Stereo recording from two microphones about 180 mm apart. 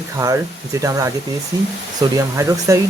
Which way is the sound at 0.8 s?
20° right (ahead or behind).